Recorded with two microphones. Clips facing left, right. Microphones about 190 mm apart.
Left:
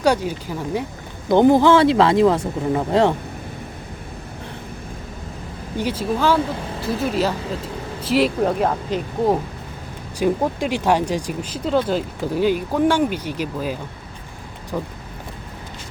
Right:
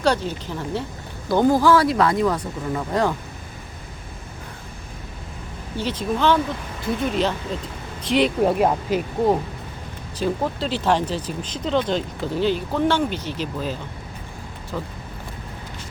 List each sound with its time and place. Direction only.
0.0 s speech: 10° left (ahead or behind)
5.7 s speech: 10° left (ahead or behind)
8.4 s speech: 5° right (ahead or behind)
10.2 s speech: 15° left (ahead or behind)